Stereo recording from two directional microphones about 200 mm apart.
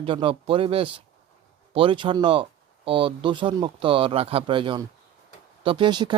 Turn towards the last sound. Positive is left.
turn(degrees=-25)  # may be behind; listen again after turning